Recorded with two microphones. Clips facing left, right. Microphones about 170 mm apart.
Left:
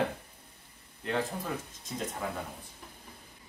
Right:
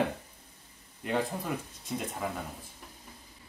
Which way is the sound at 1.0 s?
10° right (ahead or behind).